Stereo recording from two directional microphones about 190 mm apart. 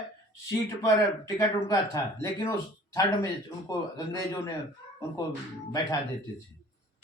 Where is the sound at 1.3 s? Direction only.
15° left (ahead or behind).